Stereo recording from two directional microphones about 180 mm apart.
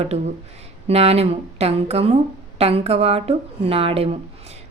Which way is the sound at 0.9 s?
35° right (ahead or behind).